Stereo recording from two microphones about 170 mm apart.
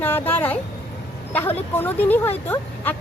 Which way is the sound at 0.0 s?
10° left (ahead or behind).